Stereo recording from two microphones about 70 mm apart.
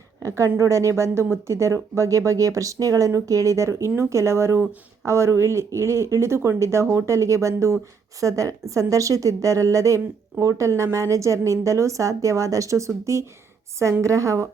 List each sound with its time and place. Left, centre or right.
0.2 s speech: right